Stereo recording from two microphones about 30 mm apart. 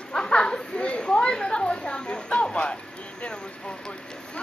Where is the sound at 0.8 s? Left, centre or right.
Left.